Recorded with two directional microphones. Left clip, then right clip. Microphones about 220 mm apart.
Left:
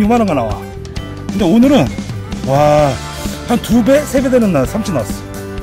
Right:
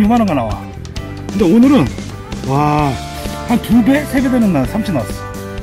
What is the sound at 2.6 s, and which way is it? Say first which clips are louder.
Speech: left 5 dB; 10° left (ahead or behind).